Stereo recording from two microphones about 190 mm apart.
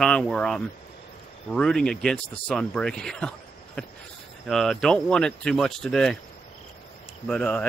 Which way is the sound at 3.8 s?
5° left (ahead or behind).